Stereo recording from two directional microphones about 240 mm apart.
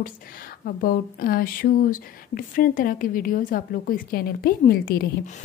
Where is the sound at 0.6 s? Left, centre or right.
Left.